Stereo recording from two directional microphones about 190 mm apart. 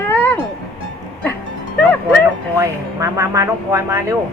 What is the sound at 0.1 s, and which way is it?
Music, 10° left (ahead or behind).